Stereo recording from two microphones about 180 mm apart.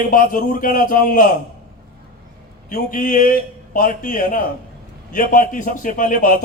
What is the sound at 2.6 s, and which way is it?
A man's voice, 50° left (ahead or behind).